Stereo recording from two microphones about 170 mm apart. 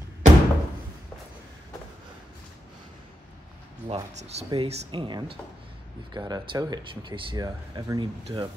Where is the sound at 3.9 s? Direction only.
40° right (ahead or behind).